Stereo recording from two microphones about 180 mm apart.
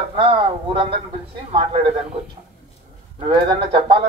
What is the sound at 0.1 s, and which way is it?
A man's voice, 30° right (ahead or behind).